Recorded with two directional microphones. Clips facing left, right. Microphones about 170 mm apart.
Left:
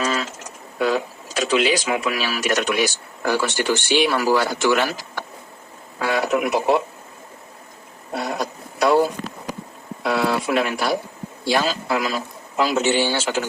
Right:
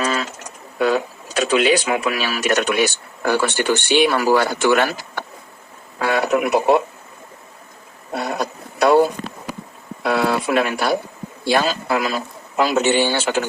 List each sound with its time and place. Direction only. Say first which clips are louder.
0.0 s a sound: right 1 dB; 60° right (ahead or behind)
0.8 s speech: right 2 dB; 60° right (ahead or behind)
8.2 s speech: right 2 dB; 60° right (ahead or behind)